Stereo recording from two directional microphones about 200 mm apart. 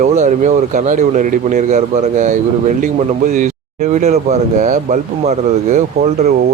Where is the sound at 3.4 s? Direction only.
35° right (ahead or behind).